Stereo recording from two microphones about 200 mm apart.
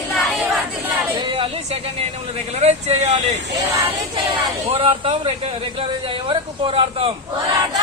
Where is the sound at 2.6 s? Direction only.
35° right (ahead or behind).